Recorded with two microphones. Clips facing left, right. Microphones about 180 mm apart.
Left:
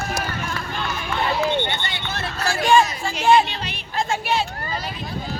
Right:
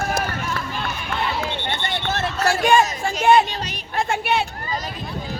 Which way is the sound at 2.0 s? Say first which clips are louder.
Right 6 dB; 45° right (ahead or behind).